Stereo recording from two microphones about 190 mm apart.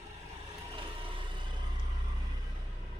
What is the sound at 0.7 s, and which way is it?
Vehicle, 25° right (ahead or behind).